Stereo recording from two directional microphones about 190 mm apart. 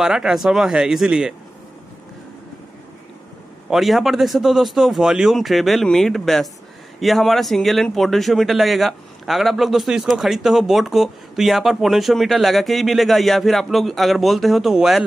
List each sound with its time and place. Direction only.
0.0 s speech: 5° right (ahead or behind)
3.7 s speech: centre (ahead or behind)